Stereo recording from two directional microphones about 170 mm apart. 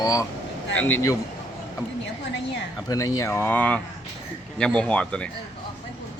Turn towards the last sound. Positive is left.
turn(degrees=5)  # may be behind; listen again after turning